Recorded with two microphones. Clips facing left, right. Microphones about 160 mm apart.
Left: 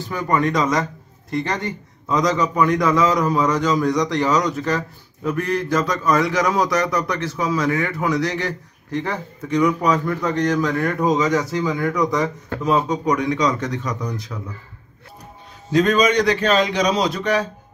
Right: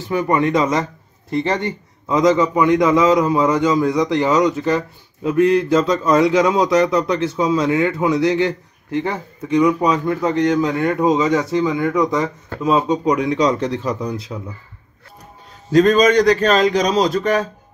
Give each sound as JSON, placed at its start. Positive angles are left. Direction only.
{"t": 0.1, "sound": "a man's voice", "side_deg": -25}
{"t": 15.7, "sound": "a man's voice", "side_deg": -40}